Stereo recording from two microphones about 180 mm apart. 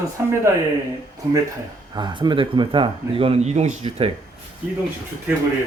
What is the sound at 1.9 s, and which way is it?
Speech, 25° right (ahead or behind).